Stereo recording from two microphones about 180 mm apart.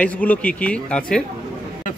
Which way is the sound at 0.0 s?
10° left (ahead or behind).